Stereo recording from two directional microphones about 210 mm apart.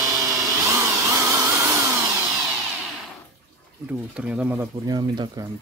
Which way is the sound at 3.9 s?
5° right (ahead or behind).